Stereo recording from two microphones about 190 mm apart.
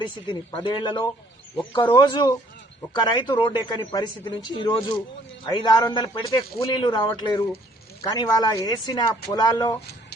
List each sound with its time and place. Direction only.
0.0 s speech: 25° left (ahead or behind)